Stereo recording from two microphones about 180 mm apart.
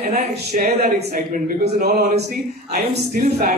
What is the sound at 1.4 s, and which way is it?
Speech, 55° right (ahead or behind).